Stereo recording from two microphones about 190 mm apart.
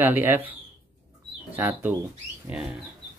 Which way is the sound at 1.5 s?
10° right (ahead or behind).